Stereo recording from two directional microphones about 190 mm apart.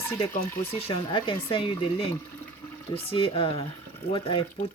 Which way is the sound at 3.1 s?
30° left (ahead or behind).